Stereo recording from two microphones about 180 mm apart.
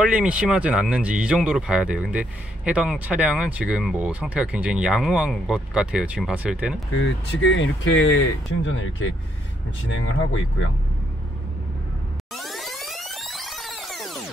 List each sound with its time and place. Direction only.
0.0 s speech: 5° right (ahead or behind)
7.0 s speech: 90° left
12.4 s music: centre (ahead or behind)